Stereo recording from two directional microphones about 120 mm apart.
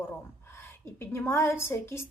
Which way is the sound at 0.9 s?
20° left (ahead or behind).